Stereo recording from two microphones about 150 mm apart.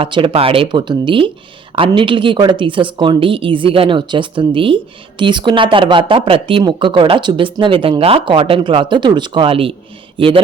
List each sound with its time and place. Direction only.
0.0 s speech: 35° right (ahead or behind)